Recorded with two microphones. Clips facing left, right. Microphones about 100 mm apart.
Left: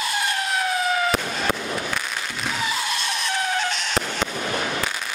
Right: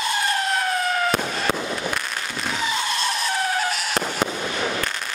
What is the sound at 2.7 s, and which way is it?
Fireworks, centre (ahead or behind).